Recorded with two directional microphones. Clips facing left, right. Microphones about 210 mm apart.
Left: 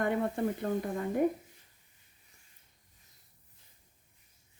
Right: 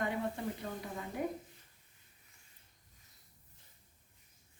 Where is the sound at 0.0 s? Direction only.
50° left (ahead or behind).